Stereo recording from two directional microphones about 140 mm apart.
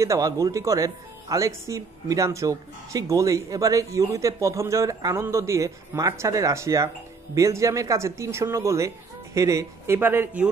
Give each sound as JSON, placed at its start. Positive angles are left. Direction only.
{"t": 0.0, "sound": "speech", "side_deg": -25}